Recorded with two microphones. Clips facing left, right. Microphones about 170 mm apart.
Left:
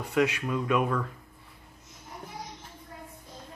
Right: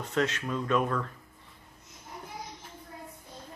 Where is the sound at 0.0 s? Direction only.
10° left (ahead or behind).